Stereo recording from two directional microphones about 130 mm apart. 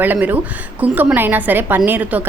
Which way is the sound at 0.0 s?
15° right (ahead or behind).